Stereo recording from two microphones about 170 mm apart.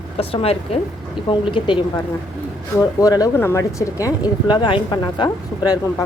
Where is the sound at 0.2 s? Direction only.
35° left (ahead or behind).